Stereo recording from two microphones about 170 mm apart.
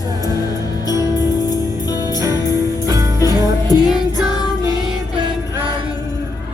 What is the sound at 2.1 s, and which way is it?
Jingle bell, 20° right (ahead or behind).